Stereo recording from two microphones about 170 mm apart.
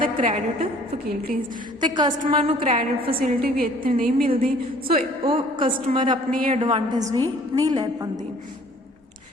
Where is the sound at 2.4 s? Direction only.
40° right (ahead or behind).